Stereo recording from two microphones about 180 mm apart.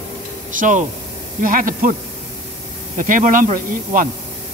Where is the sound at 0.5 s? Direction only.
45° right (ahead or behind).